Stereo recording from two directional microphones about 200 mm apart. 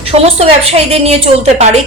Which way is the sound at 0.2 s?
30° right (ahead or behind).